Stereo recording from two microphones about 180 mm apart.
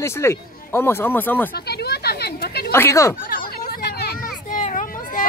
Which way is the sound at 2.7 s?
15° left (ahead or behind).